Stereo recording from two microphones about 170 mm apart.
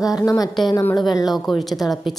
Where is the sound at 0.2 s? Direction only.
20° left (ahead or behind).